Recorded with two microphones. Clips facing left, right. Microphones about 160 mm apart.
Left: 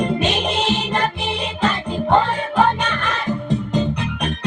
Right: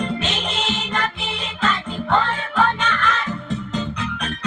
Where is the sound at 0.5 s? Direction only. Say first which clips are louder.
Left 5 dB; 35° left (ahead or behind).